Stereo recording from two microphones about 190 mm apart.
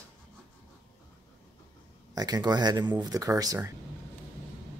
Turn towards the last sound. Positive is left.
turn(degrees=-15)  # may be behind; listen again after turning